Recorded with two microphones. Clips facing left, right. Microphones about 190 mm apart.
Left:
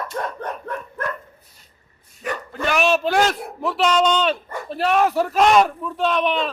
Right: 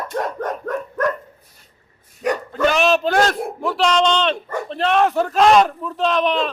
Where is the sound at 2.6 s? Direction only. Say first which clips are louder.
Right 3 dB; 5° left (ahead or behind).